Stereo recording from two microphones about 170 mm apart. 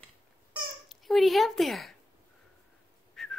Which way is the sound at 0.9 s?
Centre (ahead or behind).